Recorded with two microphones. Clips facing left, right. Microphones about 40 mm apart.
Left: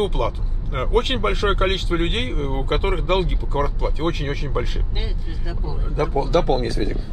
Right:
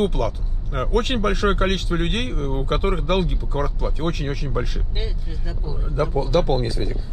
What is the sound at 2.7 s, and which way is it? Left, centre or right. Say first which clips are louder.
Speech: left 1 dB; left.